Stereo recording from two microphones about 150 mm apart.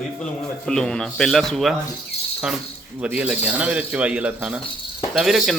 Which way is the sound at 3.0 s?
10° right (ahead or behind).